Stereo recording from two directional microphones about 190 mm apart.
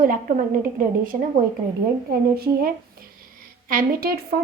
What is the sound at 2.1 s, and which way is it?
A woman's voice, 55° right (ahead or behind).